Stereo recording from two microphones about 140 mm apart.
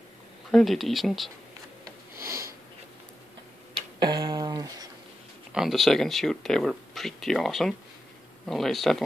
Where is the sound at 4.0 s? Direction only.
30° right (ahead or behind).